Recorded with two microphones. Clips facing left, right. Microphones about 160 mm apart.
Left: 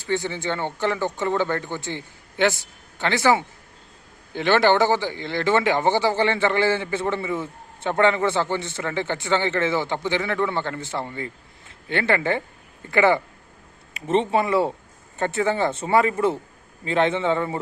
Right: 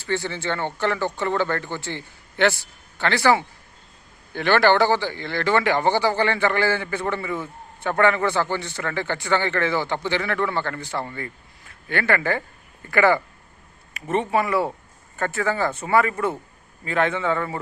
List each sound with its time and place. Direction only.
0.0 s speech: 15° left (ahead or behind)